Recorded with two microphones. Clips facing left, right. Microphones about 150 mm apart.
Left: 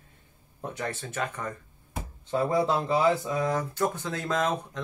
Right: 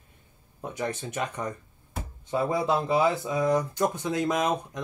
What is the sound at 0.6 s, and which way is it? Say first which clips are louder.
Speech: right 2 dB; 15° right (ahead or behind).